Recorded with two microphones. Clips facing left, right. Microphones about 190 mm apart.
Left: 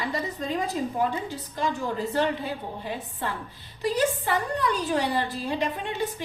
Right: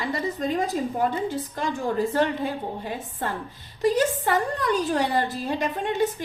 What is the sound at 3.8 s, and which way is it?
A woman's voice, 45° right (ahead or behind).